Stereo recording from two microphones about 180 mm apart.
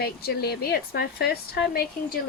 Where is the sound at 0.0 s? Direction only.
60° left (ahead or behind).